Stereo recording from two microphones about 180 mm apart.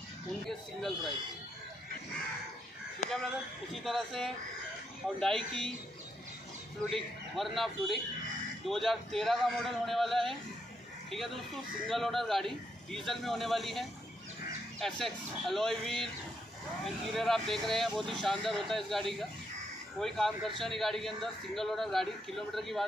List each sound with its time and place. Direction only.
0.5 s speech: centre (ahead or behind)
3.0 s speech: 40° left (ahead or behind)
3.7 s speech: centre (ahead or behind)
6.9 s speech: centre (ahead or behind)